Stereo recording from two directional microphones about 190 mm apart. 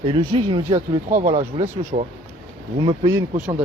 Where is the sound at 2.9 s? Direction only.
25° right (ahead or behind).